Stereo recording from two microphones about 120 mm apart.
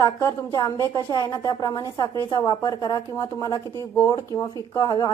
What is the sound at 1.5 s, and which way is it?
A woman's voice, 35° left (ahead or behind).